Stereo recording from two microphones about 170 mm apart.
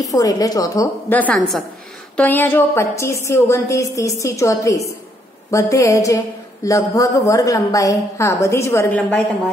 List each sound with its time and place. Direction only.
0.0 s a woman's voice: 20° left (ahead or behind)